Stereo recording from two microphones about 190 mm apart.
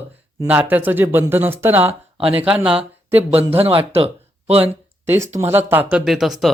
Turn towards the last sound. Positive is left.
turn(degrees=0)  # may be behind; listen again after turning